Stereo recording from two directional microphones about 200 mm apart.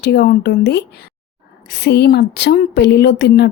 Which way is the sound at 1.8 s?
55° left (ahead or behind).